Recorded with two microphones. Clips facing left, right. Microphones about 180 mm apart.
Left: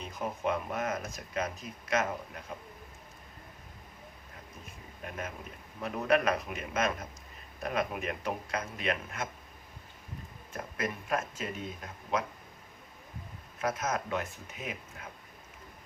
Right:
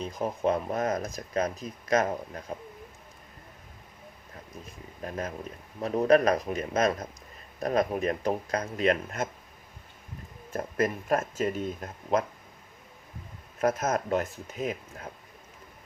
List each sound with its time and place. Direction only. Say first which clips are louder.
0.0 s speech: right 6 dB; 35° right (ahead or behind)
5.0 s speech: right 6 dB; 35° right (ahead or behind)
10.6 s speech: right 8 dB; 45° right (ahead or behind)
13.6 s speech: right 6 dB; 45° right (ahead or behind)